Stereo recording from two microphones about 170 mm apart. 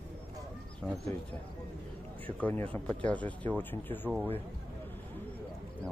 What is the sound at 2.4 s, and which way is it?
Speech, 10° left (ahead or behind).